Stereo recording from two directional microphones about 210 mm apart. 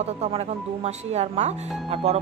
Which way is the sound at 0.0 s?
30° right (ahead or behind).